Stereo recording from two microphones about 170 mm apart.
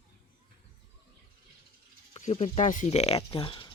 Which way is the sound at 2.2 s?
40° left (ahead or behind).